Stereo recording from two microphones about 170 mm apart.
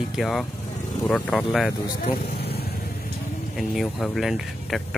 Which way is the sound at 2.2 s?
70° left (ahead or behind).